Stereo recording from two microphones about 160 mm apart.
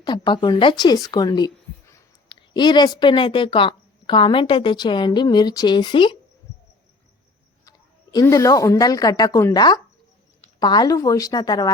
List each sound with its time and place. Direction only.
0.0 s a woman's voice: 30° left (ahead or behind)
8.1 s a woman's voice: 20° left (ahead or behind)